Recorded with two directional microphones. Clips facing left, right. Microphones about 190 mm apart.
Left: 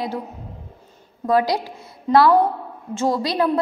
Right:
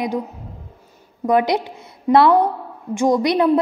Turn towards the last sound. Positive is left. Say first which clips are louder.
# right 4 dB
turn(degrees=-20)  # may be behind; listen again after turning